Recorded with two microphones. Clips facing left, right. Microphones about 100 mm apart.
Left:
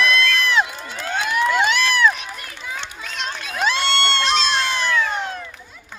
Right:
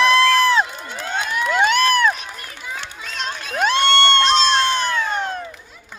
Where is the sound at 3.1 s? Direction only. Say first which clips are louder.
Right 2 dB; 30° right (ahead or behind).